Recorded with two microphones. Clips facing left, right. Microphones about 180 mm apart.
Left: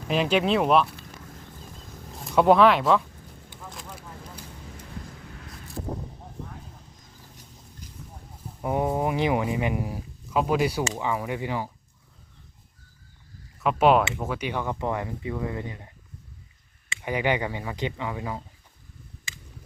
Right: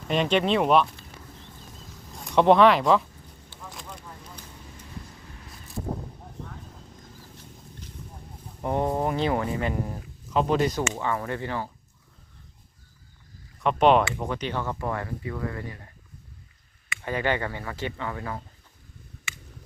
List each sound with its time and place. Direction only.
0.1 s speech: 5° left (ahead or behind)
2.2 s speech: 5° left (ahead or behind)
3.7 s a sound: centre (ahead or behind)
8.6 s speech: 5° left (ahead or behind)
13.6 s speech: 5° left (ahead or behind); by 15.9 s 20° left (ahead or behind)
17.0 s speech: 15° left (ahead or behind)